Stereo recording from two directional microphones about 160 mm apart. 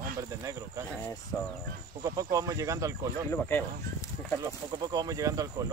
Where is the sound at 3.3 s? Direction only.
15° left (ahead or behind).